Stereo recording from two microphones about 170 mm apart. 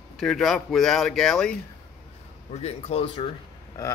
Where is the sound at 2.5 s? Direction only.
40° left (ahead or behind).